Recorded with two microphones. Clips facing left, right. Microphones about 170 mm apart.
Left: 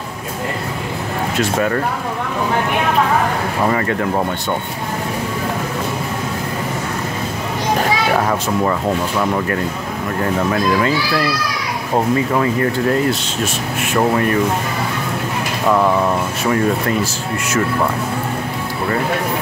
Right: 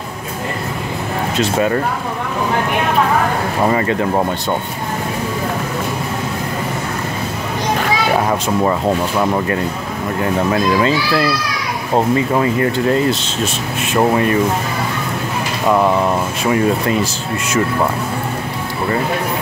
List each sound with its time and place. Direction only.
1.4 s speech: 20° right (ahead or behind)
3.7 s speech: 20° right (ahead or behind)
9.2 s speech: 20° right (ahead or behind)
12.4 s speech: 25° right (ahead or behind)
15.7 s speech: 15° right (ahead or behind)